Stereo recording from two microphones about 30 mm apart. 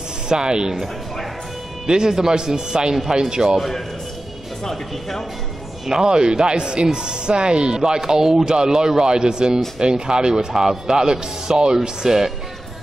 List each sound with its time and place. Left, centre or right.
0.3 s speech: right
1.9 s speech: right
5.9 s speech: right